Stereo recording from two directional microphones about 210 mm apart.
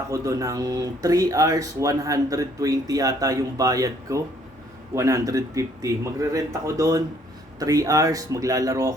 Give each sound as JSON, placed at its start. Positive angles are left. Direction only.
{"t": 0.1, "sound": "speech", "side_deg": -15}